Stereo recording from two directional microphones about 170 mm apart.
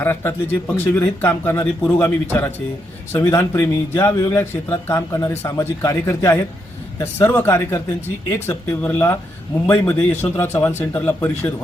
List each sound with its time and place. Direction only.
0.0 s speech: 15° left (ahead or behind)